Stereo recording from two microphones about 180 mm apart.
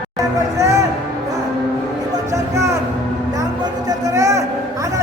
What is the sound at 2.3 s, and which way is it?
Music, 15° right (ahead or behind).